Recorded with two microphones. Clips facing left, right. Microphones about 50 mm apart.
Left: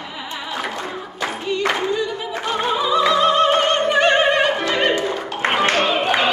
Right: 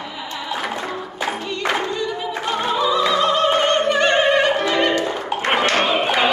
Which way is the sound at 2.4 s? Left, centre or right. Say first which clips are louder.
Even; centre.